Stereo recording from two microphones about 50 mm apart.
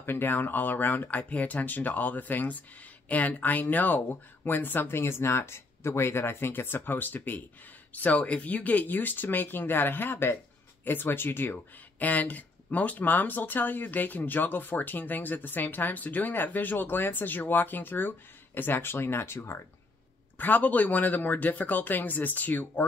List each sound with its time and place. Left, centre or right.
0.0 s speech: left
12.0 s speech: left
20.3 s speech: left